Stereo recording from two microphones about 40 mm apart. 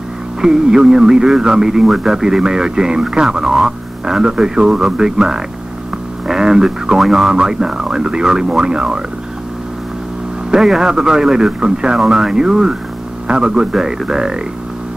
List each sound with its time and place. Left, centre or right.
0.4 s speech: centre
10.5 s speech: centre